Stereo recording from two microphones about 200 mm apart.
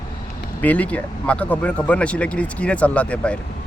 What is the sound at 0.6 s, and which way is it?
Speech, 5° left (ahead or behind).